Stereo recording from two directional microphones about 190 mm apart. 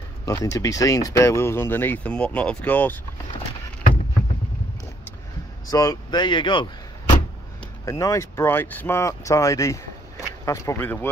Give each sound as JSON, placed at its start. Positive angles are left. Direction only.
{"t": 0.2, "sound": "speech", "side_deg": 20}
{"t": 5.7, "sound": "speech", "side_deg": 20}